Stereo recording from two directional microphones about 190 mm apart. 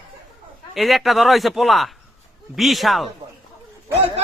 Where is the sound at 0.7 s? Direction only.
Centre (ahead or behind).